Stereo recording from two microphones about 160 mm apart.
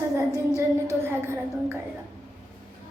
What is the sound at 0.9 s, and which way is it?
Speech, 15° right (ahead or behind).